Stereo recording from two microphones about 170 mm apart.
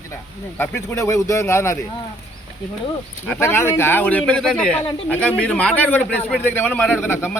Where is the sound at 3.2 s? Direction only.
15° left (ahead or behind).